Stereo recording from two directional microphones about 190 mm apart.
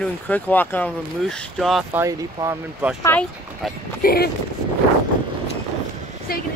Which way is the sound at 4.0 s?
50° left (ahead or behind).